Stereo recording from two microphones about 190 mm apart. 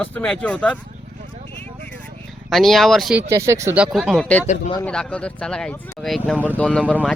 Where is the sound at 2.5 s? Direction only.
Centre (ahead or behind).